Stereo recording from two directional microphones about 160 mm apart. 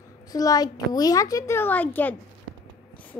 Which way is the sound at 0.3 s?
20° left (ahead or behind).